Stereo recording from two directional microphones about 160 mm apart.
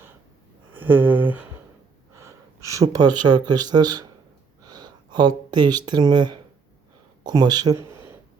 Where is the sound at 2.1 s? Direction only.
20° right (ahead or behind).